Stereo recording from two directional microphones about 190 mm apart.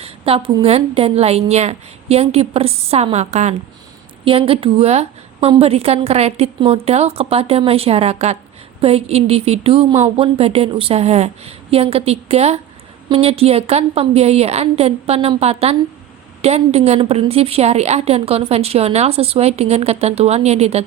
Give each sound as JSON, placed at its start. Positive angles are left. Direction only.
{"t": 0.0, "sound": "a woman's voice", "side_deg": -30}